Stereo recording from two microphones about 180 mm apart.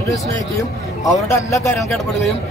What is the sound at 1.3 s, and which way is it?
Speech, 15° left (ahead or behind).